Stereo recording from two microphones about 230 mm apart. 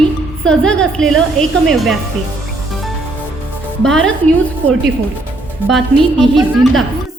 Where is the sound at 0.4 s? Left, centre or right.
Centre.